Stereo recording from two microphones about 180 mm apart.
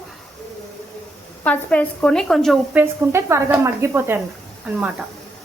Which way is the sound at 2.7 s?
10° right (ahead or behind).